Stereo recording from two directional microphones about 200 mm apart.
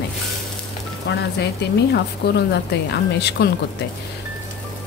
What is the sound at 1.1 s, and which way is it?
A woman's voice, 60° left (ahead or behind).